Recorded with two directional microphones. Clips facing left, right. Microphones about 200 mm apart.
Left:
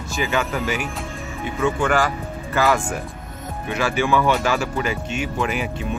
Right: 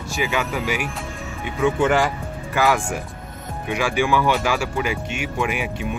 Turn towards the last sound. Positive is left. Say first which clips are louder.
# left 1 dB
turn(degrees=-10)  # may be behind; listen again after turning